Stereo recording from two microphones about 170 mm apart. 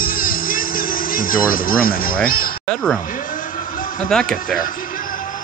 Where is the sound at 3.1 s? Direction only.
55° left (ahead or behind).